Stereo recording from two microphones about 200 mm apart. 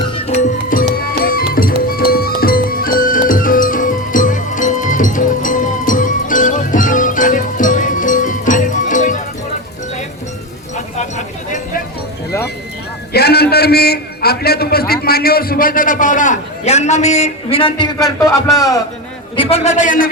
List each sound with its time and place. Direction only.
0.3 s music: 40° left (ahead or behind)
13.1 s a sound: 55° left (ahead or behind); by 17.8 s 25° left (ahead or behind)
19.4 s a man's voice: 30° left (ahead or behind)